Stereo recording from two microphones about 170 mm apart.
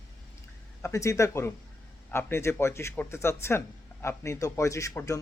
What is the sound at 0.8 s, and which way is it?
Speech, 15° left (ahead or behind).